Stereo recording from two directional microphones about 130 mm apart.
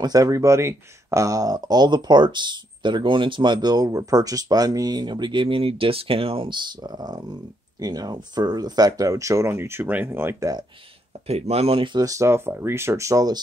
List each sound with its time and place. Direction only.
0.0 s speech: 30° right (ahead or behind)
11.2 s speech: 50° right (ahead or behind); by 13.4 s 25° right (ahead or behind)